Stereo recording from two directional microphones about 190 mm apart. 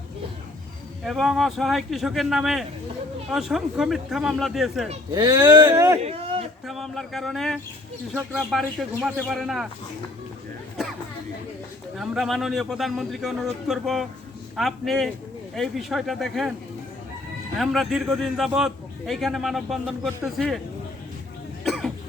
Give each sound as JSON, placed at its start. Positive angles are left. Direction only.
{"t": 1.0, "sound": "a man's voice", "side_deg": 0}
{"t": 5.1, "sound": "speech", "side_deg": -15}
{"t": 6.0, "sound": "a sound", "side_deg": -30}
{"t": 6.7, "sound": "a man's voice", "side_deg": 0}
{"t": 11.9, "sound": "a man's voice", "side_deg": 0}
{"t": 17.6, "sound": "a man's voice", "side_deg": 0}
{"t": 21.6, "sound": "cough", "side_deg": 0}